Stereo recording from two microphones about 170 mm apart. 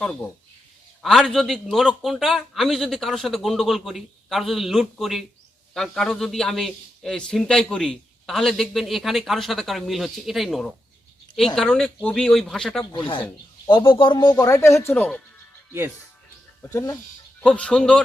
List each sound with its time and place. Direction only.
0.0 s a man's voice: 5° left (ahead or behind)
12.9 s speech: 30° left (ahead or behind); by 15.2 s 10° left (ahead or behind)
16.6 s speech: 20° left (ahead or behind)
17.4 s a man's voice: 5° left (ahead or behind)